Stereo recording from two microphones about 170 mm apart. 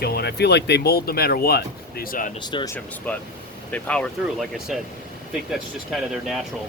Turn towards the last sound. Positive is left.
turn(degrees=0)  # may be behind; listen again after turning